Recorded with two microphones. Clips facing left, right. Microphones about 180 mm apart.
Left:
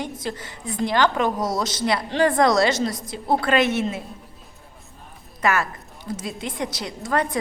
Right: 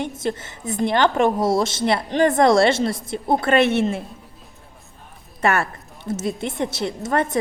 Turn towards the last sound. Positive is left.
turn(degrees=-25)  # may be behind; listen again after turning